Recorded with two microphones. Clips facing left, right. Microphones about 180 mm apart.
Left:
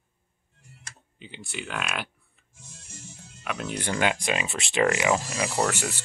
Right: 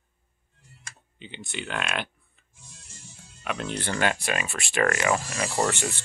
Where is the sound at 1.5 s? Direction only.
5° left (ahead or behind).